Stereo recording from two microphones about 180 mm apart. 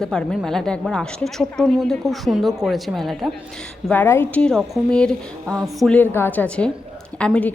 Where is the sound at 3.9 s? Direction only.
10° left (ahead or behind).